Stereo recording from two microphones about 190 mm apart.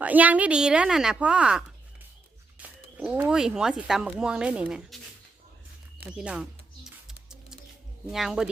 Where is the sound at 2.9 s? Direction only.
10° right (ahead or behind).